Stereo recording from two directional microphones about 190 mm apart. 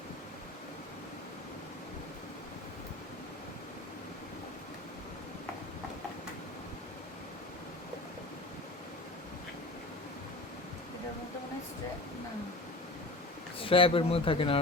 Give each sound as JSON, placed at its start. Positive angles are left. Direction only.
{"t": 13.6, "sound": "speech", "side_deg": 30}